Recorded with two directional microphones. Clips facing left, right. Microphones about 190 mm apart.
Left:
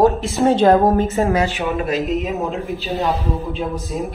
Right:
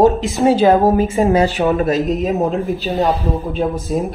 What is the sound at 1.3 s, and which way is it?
Speech, 35° right (ahead or behind).